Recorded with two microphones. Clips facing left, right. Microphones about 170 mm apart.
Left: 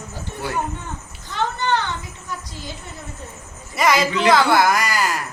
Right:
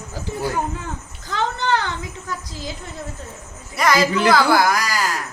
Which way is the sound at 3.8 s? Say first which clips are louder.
Right 1 dB; centre (ahead or behind).